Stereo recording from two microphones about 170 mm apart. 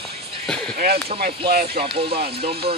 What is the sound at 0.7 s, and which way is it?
Speech, 65° right (ahead or behind).